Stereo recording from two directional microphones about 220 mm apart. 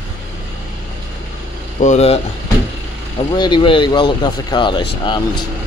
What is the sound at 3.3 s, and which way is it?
Speech, 20° left (ahead or behind).